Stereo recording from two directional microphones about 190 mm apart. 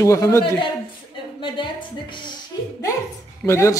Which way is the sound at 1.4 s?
25° left (ahead or behind).